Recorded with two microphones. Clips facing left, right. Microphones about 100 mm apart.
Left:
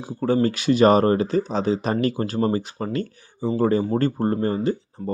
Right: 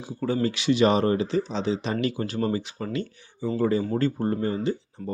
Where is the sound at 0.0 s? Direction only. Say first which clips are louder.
Left 5 dB; 40° left (ahead or behind).